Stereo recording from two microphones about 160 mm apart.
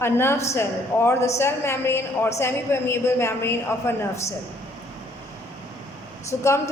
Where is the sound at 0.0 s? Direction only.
15° left (ahead or behind).